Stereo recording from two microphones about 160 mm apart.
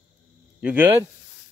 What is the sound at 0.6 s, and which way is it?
Speech, 10° right (ahead or behind).